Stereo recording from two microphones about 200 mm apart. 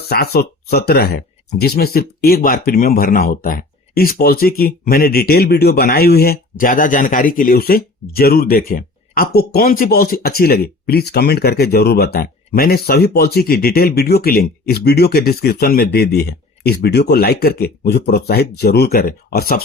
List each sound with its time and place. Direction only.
0.0 s speech: 50° left (ahead or behind)